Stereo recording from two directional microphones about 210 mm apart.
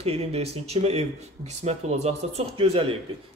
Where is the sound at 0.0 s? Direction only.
30° right (ahead or behind).